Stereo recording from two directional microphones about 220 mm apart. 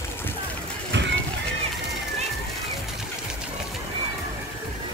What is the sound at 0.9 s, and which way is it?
Music, 55° right (ahead or behind).